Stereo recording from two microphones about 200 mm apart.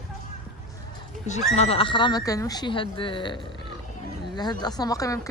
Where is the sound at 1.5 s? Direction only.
30° left (ahead or behind); by 5.3 s 15° left (ahead or behind).